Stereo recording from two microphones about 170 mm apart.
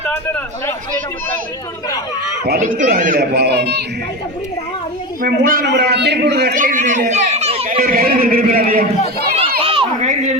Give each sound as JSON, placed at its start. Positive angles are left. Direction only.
{"t": 2.6, "sound": "speech", "side_deg": -50}
{"t": 5.2, "sound": "speech", "side_deg": -55}
{"t": 5.6, "sound": "a man's voice", "side_deg": -85}
{"t": 6.5, "sound": "a man's voice", "side_deg": -50}
{"t": 7.1, "sound": "a sound", "side_deg": -40}
{"t": 7.8, "sound": "speech", "side_deg": -60}
{"t": 9.4, "sound": "a sound", "side_deg": -30}